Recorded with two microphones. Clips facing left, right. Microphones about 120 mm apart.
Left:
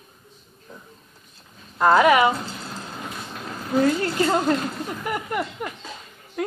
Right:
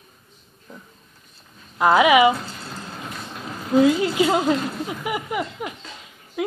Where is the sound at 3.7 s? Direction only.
10° right (ahead or behind).